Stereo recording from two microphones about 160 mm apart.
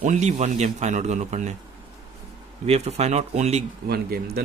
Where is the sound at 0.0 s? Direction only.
45° right (ahead or behind).